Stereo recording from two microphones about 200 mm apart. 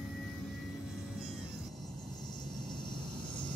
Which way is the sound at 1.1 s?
Centre (ahead or behind).